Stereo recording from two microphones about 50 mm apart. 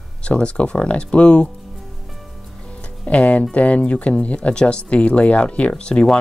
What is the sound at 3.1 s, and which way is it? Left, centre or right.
Speech, left.